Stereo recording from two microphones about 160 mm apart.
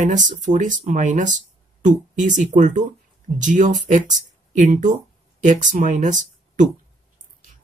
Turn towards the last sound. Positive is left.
turn(degrees=-50)  # may be behind; listen again after turning